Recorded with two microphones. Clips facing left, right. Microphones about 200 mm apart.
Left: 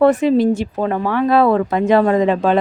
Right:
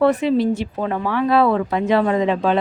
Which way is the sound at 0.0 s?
45° left (ahead or behind).